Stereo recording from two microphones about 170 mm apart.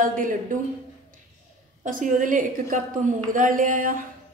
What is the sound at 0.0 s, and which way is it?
Speech, 50° right (ahead or behind).